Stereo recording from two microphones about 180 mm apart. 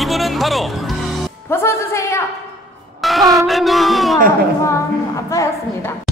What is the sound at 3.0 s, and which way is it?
Speech, centre (ahead or behind).